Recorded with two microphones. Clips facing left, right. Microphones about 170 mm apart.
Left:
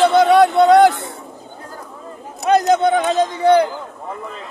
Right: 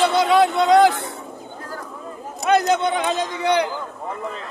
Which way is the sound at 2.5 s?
45° left (ahead or behind).